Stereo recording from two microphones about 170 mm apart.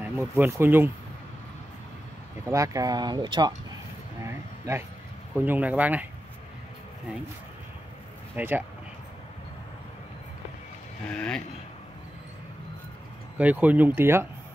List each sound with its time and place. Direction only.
0.0 s speech: 10° right (ahead or behind)
2.4 s speech: 20° right (ahead or behind)
4.2 s a sound: 15° right (ahead or behind)
5.4 s speech: 10° right (ahead or behind)
8.4 s speech: 10° right (ahead or behind)
11.1 s speech: 5° left (ahead or behind)
13.4 s speech: 10° right (ahead or behind)